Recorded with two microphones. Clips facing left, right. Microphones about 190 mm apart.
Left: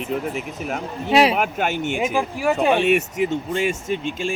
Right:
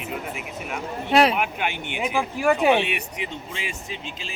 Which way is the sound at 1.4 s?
45° left (ahead or behind).